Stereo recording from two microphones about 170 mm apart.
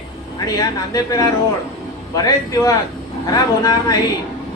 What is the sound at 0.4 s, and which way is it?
Speech, 20° left (ahead or behind).